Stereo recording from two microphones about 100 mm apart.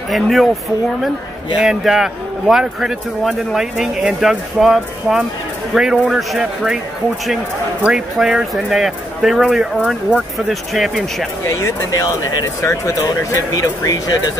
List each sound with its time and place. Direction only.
0.1 s a man's voice: centre (ahead or behind)
1.6 s a man's voice: 5° right (ahead or behind)
7.8 s a man's voice: 10° right (ahead or behind)
11.4 s speech: 30° left (ahead or behind)